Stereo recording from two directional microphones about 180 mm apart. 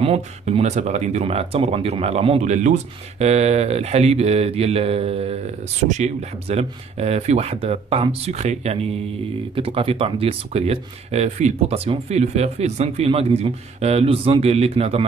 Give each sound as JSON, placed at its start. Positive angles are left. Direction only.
{"t": 0.0, "sound": "speech", "side_deg": -35}